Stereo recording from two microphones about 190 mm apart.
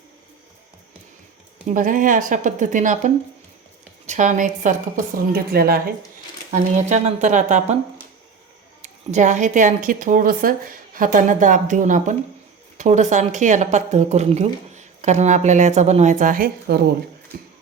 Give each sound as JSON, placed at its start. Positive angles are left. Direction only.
{"t": 1.6, "sound": "a woman's voice", "side_deg": -45}
{"t": 6.5, "sound": "a woman's voice", "side_deg": -40}
{"t": 8.8, "sound": "a woman's voice", "side_deg": -40}